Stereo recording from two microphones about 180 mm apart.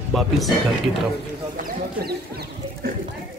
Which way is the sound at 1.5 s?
55° right (ahead or behind).